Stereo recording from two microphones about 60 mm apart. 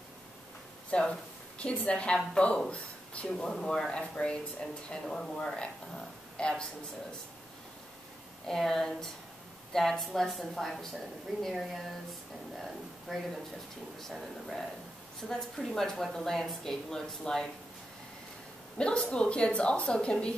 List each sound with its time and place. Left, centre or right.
0.8 s a woman's voice: centre
8.5 s a woman's voice: centre
18.8 s a woman's voice: centre